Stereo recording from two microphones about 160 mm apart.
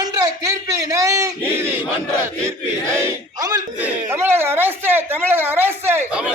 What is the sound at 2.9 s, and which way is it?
Speech, 20° right (ahead or behind).